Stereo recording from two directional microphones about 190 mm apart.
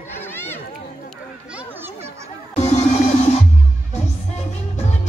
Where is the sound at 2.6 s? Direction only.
35° left (ahead or behind).